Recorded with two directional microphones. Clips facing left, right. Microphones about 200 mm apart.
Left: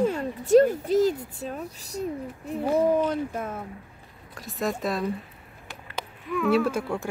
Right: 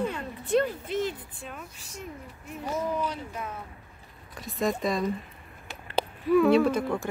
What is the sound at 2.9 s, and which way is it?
Speech, 50° left (ahead or behind).